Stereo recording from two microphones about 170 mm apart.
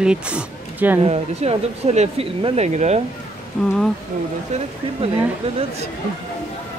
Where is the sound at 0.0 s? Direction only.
5° right (ahead or behind).